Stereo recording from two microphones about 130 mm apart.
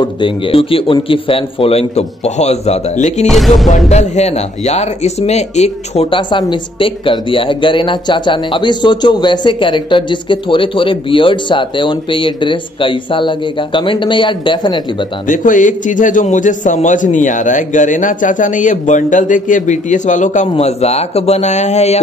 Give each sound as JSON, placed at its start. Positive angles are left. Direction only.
{"t": 0.0, "sound": "a man's voice", "side_deg": 40}
{"t": 3.3, "sound": "speech", "side_deg": 0}
{"t": 3.9, "sound": "a man's voice", "side_deg": 60}
{"t": 6.0, "sound": "speech", "side_deg": 40}
{"t": 15.2, "sound": "a man's voice", "side_deg": 90}